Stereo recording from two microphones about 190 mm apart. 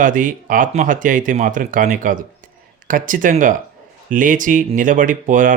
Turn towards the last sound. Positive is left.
turn(degrees=-45)  # may be behind; listen again after turning